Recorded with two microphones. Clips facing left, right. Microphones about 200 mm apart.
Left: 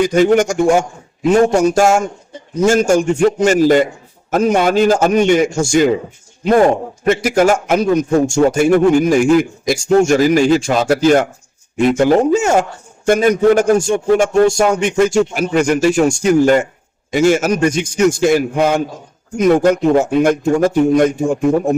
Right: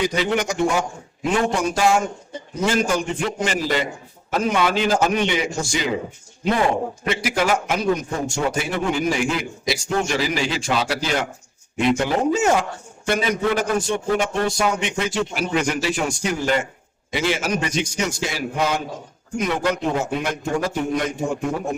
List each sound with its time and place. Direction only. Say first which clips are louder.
0.0 s a man's voice: left 10 dB; 50° left (ahead or behind)